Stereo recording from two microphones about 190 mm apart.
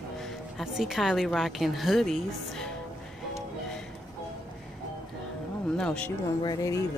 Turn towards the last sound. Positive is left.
turn(degrees=15)  # may be behind; listen again after turning